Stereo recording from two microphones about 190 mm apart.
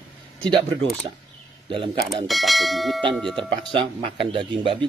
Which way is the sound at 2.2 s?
Centre (ahead or behind).